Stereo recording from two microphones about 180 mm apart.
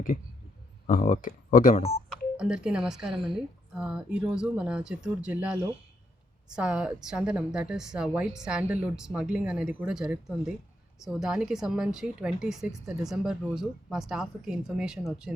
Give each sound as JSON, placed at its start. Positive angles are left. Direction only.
{"t": 0.9, "sound": "speech", "side_deg": 45}
{"t": 2.4, "sound": "speech", "side_deg": -5}